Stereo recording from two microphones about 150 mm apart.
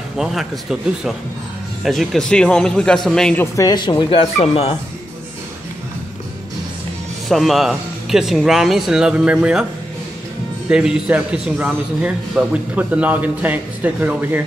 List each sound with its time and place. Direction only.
0.2 s speech: centre (ahead or behind)
3.5 s speech: 25° left (ahead or behind); by 4.7 s 40° left (ahead or behind)
7.2 s speech: centre (ahead or behind)
10.7 s a man's voice: 5° right (ahead or behind)